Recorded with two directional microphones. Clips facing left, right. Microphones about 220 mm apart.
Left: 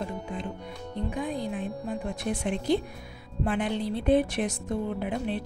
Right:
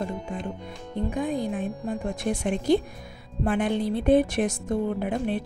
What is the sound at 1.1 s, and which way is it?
Music, 50° right (ahead or behind).